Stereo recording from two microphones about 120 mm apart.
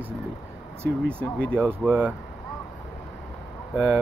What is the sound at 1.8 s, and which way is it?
Speech, 15° right (ahead or behind).